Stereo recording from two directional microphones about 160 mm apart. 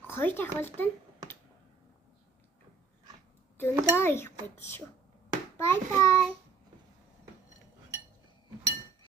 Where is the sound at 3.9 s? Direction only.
15° left (ahead or behind).